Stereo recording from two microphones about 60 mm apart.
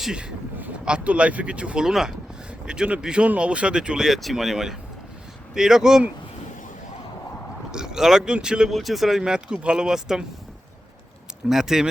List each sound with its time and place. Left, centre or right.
0.0 s speech: centre
7.7 s speech: centre
8.7 s speech: centre
11.4 s speech: centre